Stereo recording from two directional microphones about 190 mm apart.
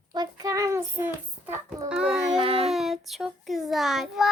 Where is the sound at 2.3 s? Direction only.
30° right (ahead or behind).